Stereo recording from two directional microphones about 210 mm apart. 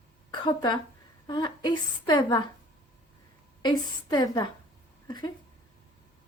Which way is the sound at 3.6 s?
20° left (ahead or behind).